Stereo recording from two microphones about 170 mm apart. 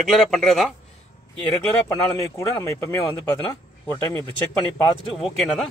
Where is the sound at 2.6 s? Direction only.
20° left (ahead or behind).